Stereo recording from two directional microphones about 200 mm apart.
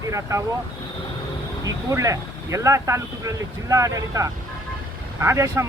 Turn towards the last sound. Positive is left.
turn(degrees=-15)  # may be behind; listen again after turning